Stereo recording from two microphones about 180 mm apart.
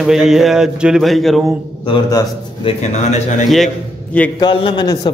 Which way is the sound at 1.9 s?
20° left (ahead or behind).